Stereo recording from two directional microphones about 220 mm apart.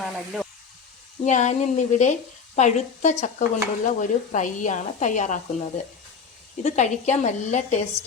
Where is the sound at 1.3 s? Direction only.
35° left (ahead or behind).